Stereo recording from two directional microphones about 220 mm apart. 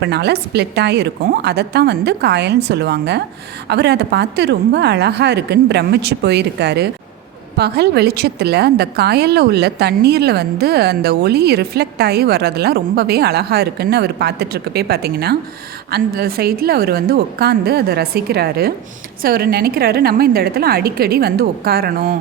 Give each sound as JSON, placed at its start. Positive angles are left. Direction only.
{"t": 0.0, "sound": "a woman's voice", "side_deg": -50}